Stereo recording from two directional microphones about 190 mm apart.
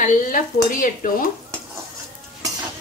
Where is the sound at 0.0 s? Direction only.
45° left (ahead or behind).